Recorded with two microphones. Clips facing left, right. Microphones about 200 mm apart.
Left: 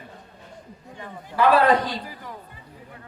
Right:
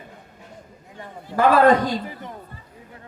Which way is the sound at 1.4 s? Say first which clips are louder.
Right 3 dB; 45° right (ahead or behind).